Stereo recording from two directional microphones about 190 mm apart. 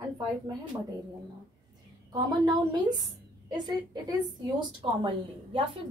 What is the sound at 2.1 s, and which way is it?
A woman's voice, 20° right (ahead or behind).